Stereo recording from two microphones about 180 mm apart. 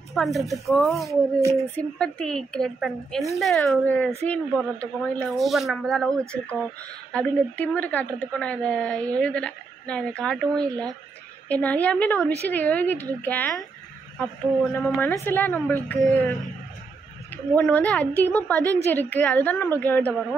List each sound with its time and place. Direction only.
0.1 s a woman's voice: centre (ahead or behind)
17.6 s a woman's voice: 10° left (ahead or behind)
18.5 s a woman's voice: 20° right (ahead or behind)
18.9 s a woman's voice: 10° left (ahead or behind)